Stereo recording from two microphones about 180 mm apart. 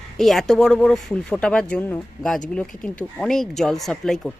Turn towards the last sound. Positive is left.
turn(degrees=0)  # may be behind; listen again after turning